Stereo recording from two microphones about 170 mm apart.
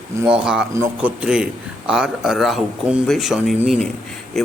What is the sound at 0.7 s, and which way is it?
Speech, 15° right (ahead or behind).